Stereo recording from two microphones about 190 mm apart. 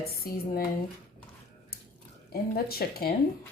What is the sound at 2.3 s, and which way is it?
Speech, 55° left (ahead or behind).